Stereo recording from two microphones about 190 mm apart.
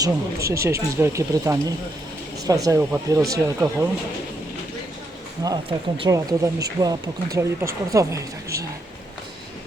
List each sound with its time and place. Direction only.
0.0 s speech: 15° right (ahead or behind)
5.4 s speech: 20° right (ahead or behind)